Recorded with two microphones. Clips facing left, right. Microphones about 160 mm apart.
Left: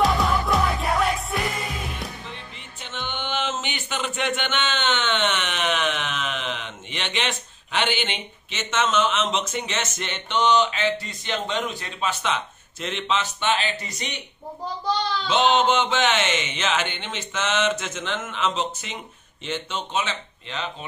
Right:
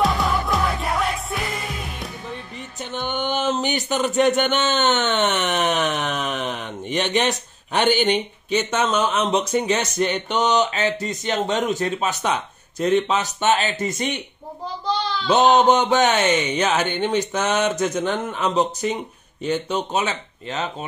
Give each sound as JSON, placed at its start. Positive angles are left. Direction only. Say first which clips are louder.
{"t": 0.0, "sound": "music", "louder": "even", "side_deg": 0}
{"t": 2.8, "sound": "music", "louder": "right 6 dB", "side_deg": -45}
{"t": 3.3, "sound": "speech", "louder": "right 6 dB", "side_deg": -40}
{"t": 15.2, "sound": "speech", "louder": "right 5 dB", "side_deg": -40}